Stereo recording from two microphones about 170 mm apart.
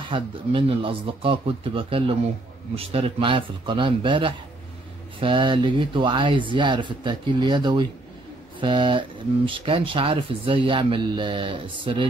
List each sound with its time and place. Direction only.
0.1 s speech: 30° right (ahead or behind)